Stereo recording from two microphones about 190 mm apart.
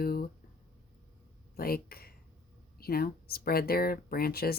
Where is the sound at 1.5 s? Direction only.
55° left (ahead or behind).